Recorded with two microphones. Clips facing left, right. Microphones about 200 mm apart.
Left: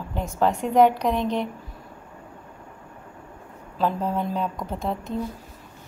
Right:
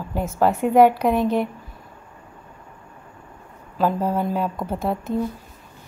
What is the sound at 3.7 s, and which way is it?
Speech, 5° right (ahead or behind).